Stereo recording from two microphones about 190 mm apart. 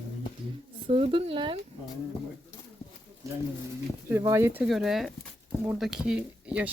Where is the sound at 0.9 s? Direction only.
30° right (ahead or behind).